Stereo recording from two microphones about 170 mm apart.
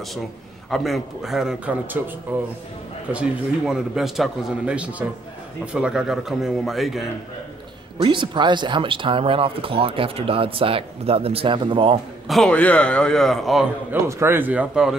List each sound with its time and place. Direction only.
0.7 s a man's voice: centre (ahead or behind)
8.0 s speech: 30° right (ahead or behind)
12.3 s a man's voice: 5° left (ahead or behind)
14.0 s speech: 15° right (ahead or behind)